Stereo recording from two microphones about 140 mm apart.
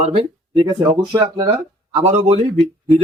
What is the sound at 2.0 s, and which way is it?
Speech, 50° right (ahead or behind).